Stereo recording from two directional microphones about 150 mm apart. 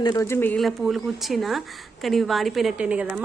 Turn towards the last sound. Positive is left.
turn(degrees=-10)  # may be behind; listen again after turning